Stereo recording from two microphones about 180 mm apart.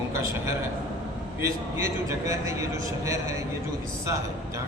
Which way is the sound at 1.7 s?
15° right (ahead or behind).